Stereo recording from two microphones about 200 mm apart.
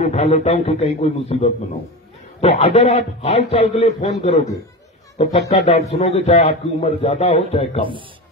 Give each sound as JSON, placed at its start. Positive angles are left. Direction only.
{"t": 0.0, "sound": "a man's voice", "side_deg": 35}
{"t": 2.6, "sound": "a man's voice", "side_deg": 30}